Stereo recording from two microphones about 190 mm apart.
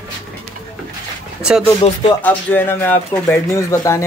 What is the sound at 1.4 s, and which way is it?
Speech, 5° right (ahead or behind).